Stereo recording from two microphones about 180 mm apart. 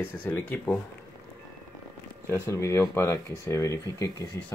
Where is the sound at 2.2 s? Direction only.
15° left (ahead or behind).